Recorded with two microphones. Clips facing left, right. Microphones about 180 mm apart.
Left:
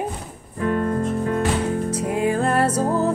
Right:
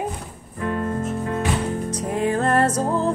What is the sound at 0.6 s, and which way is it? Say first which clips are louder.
Music: left 3 dB; 35° left (ahead or behind).